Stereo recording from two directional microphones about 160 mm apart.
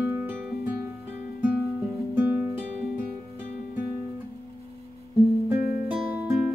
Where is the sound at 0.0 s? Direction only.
15° right (ahead or behind).